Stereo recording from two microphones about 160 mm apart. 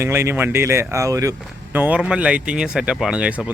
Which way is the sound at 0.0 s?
15° right (ahead or behind).